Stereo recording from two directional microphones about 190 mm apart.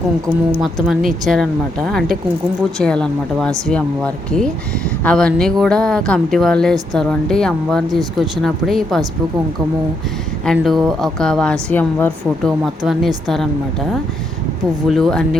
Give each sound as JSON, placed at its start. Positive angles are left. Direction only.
{"t": 0.6, "sound": "speech", "side_deg": 0}
{"t": 7.9, "sound": "speech", "side_deg": -20}
{"t": 8.4, "sound": "speech", "side_deg": 0}
{"t": 10.4, "sound": "speech", "side_deg": 0}
{"t": 14.8, "sound": "speech", "side_deg": 0}